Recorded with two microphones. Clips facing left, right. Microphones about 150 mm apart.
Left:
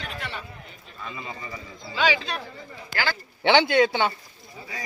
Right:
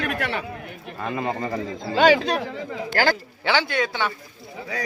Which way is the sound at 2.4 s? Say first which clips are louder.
Right 11 dB; 90° right.